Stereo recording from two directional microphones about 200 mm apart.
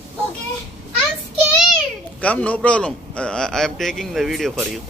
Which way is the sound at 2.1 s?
5° left (ahead or behind).